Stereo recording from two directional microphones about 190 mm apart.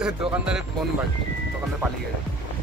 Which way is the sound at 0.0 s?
5° right (ahead or behind).